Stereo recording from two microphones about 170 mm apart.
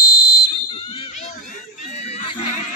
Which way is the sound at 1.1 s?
45° left (ahead or behind).